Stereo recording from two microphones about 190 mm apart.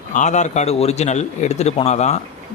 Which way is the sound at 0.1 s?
40° left (ahead or behind).